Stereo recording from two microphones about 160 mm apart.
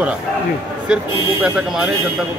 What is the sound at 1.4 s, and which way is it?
Speech, 5° right (ahead or behind).